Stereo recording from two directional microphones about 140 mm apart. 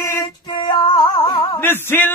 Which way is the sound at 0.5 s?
35° left (ahead or behind).